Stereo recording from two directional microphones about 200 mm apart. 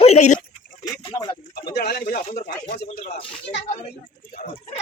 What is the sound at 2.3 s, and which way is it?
Speech, 50° left (ahead or behind).